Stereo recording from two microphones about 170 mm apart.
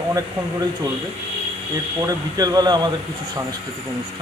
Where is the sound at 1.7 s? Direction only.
20° right (ahead or behind).